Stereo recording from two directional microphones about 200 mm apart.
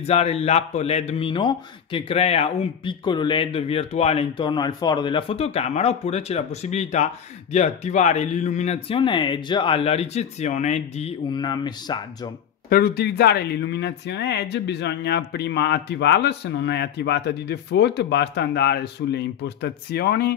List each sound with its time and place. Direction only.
0.0 s a man's voice: 30° left (ahead or behind)
12.6 s speech: 50° left (ahead or behind)